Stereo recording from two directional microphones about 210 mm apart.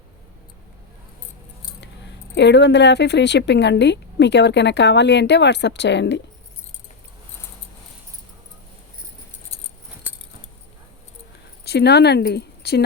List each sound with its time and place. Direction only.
2.3 s speech: 55° left (ahead or behind)
11.6 s speech: 50° left (ahead or behind)